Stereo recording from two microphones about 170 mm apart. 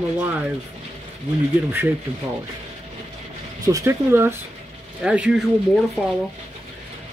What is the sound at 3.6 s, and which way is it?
Speech, 20° right (ahead or behind).